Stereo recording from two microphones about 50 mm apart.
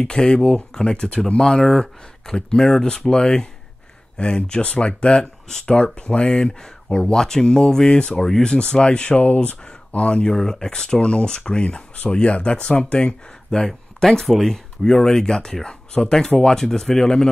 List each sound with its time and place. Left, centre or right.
0.0 s speech: centre